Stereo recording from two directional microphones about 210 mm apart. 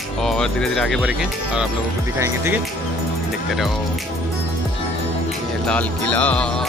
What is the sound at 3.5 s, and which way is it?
Speech, centre (ahead or behind).